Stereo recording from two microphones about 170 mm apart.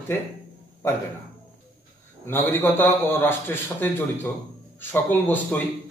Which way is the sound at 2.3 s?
10° left (ahead or behind).